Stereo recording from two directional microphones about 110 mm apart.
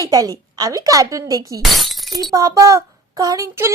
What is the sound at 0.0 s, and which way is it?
Speech, 35° right (ahead or behind).